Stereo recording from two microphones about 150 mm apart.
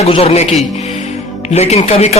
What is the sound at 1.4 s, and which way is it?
Speech, 45° left (ahead or behind).